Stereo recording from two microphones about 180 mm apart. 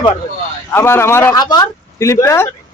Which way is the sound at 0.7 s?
15° left (ahead or behind).